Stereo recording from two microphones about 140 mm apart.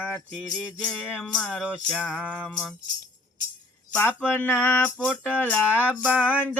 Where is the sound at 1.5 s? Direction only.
5° right (ahead or behind).